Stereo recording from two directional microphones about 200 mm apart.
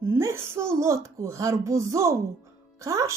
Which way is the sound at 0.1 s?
15° right (ahead or behind).